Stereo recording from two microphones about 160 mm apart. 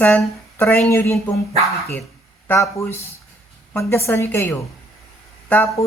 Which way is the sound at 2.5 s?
15° left (ahead or behind).